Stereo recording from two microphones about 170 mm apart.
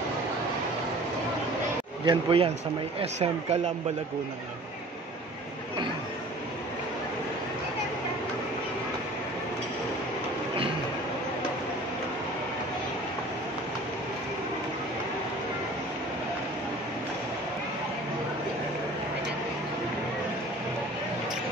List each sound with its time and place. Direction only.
2.0 s speech: 30° right (ahead or behind)